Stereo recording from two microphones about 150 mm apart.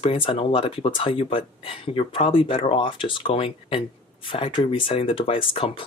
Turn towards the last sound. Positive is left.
turn(degrees=35)  # may be behind; listen again after turning